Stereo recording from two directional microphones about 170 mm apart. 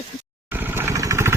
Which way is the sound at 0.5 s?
10° right (ahead or behind).